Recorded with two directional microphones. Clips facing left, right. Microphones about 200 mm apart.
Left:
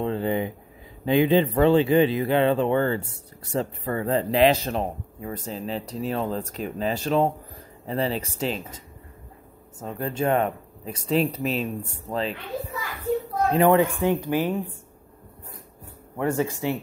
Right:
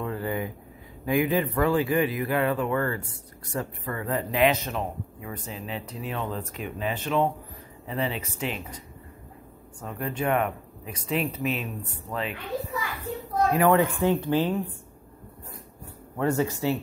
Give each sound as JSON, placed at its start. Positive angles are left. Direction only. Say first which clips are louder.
{"t": 0.0, "sound": "a sound", "louder": "left 5 dB", "side_deg": 25}
{"t": 1.0, "sound": "a man's voice", "louder": "left 5 dB", "side_deg": 25}
{"t": 9.8, "sound": "a man's voice", "louder": "left 3 dB", "side_deg": 30}
{"t": 13.5, "sound": "speech", "louder": "left 3 dB", "side_deg": 25}
{"t": 16.2, "sound": "speech", "louder": "even", "side_deg": 15}